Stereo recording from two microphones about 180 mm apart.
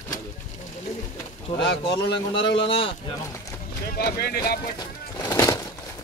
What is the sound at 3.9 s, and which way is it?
Speech, 60° left (ahead or behind).